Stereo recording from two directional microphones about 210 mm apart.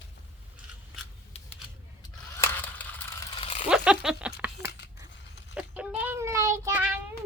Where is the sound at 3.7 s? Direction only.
Centre (ahead or behind).